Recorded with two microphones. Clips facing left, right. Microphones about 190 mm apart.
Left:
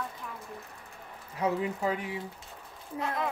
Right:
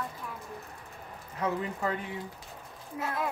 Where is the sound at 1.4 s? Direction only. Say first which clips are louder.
Left 2 dB; 10° left (ahead or behind).